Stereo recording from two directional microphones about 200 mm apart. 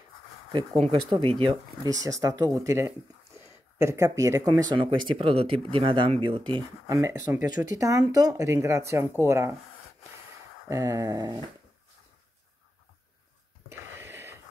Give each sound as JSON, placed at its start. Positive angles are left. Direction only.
{"t": 1.4, "sound": "speech", "side_deg": -25}
{"t": 7.4, "sound": "speech", "side_deg": 40}
{"t": 7.7, "sound": "speech", "side_deg": -15}
{"t": 10.7, "sound": "speech", "side_deg": -15}
{"t": 13.7, "sound": "a sound", "side_deg": -10}